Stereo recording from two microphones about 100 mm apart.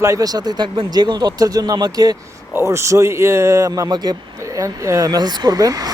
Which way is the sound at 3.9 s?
45° right (ahead or behind).